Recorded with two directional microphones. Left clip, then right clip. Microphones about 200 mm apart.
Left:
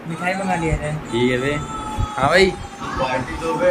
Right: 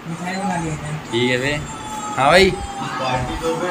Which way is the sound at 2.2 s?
20° left (ahead or behind).